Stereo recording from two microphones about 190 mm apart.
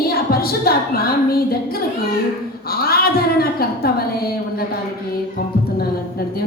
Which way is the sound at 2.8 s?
55° left (ahead or behind).